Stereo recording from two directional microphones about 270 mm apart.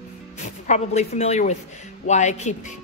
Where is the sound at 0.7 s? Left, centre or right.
Left.